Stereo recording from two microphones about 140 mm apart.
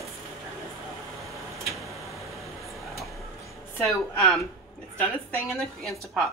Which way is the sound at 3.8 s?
10° left (ahead or behind).